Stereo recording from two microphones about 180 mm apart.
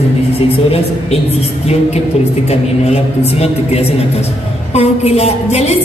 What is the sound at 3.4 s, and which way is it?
A woman's voice, 35° left (ahead or behind).